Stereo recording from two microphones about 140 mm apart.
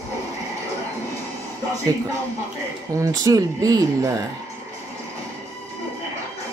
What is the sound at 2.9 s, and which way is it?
Speech, 25° right (ahead or behind).